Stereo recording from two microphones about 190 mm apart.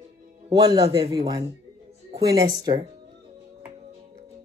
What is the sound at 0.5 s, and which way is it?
A man's voice, 20° right (ahead or behind).